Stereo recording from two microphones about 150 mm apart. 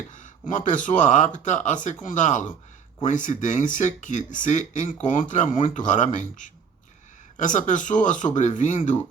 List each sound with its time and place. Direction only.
0.1 s speech: 55° left (ahead or behind)